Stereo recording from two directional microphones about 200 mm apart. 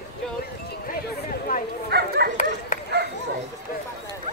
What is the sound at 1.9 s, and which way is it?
Speech, 55° right (ahead or behind).